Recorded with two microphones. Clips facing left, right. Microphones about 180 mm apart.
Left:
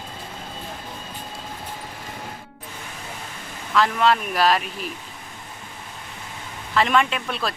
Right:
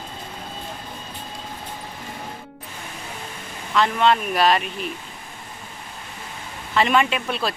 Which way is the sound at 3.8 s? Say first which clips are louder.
Right 1 dB; centre (ahead or behind).